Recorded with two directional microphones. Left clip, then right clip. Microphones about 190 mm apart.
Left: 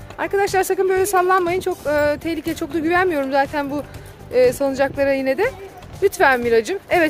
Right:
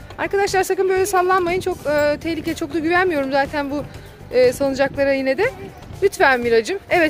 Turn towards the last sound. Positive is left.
turn(degrees=0)  # may be behind; listen again after turning